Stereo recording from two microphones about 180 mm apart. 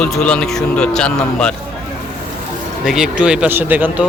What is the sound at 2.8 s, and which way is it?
Speech, centre (ahead or behind).